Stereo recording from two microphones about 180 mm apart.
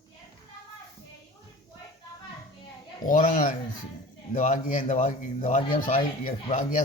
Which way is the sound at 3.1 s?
45° left (ahead or behind).